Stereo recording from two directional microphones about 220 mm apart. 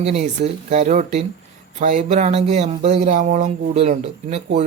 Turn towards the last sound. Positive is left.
turn(degrees=-30)  # may be behind; listen again after turning